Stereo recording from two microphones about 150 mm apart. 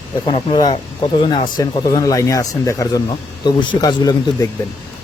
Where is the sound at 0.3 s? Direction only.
35° left (ahead or behind).